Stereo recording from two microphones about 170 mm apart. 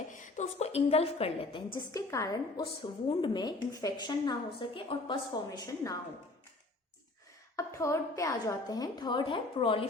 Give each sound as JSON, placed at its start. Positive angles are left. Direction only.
{"t": 0.1, "sound": "a woman's voice", "side_deg": 45}
{"t": 7.5, "sound": "a woman's voice", "side_deg": 15}